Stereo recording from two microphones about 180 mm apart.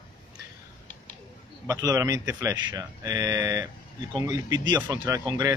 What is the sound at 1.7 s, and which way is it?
Speech, 20° right (ahead or behind).